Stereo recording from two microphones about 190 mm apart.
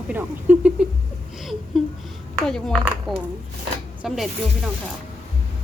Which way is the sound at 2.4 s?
Centre (ahead or behind).